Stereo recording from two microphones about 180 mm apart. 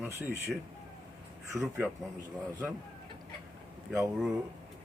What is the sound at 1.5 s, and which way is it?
Speech, 15° right (ahead or behind).